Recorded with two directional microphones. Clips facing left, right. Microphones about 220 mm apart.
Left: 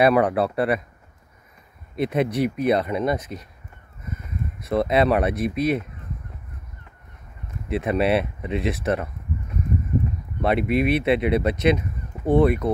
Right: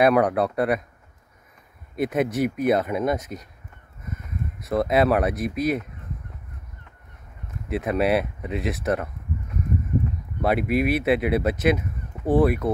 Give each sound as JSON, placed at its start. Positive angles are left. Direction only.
{"t": 0.0, "sound": "speech", "side_deg": 0}
{"t": 2.0, "sound": "speech", "side_deg": 0}
{"t": 4.6, "sound": "speech", "side_deg": 0}
{"t": 7.6, "sound": "speech", "side_deg": 0}
{"t": 10.4, "sound": "speech", "side_deg": -5}